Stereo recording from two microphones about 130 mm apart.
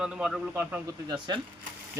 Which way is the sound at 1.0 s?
35° right (ahead or behind).